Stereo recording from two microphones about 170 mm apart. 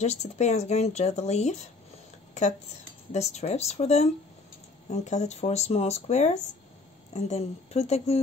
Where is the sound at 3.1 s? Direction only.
40° left (ahead or behind).